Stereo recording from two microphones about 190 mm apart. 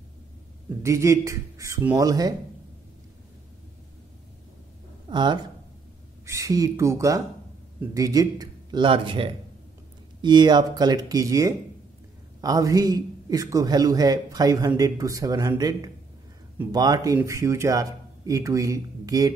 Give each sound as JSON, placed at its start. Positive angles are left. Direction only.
{"t": 0.8, "sound": "speech", "side_deg": -15}
{"t": 5.0, "sound": "a man's voice", "side_deg": -25}